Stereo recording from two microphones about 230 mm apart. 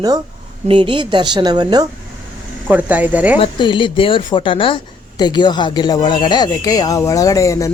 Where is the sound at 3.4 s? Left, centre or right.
Left.